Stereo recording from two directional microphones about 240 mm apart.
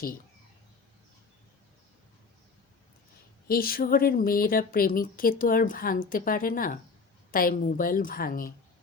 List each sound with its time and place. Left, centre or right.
3.4 s a woman's voice: left